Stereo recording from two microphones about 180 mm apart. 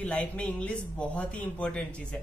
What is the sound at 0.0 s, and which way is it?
Speech, 5° left (ahead or behind).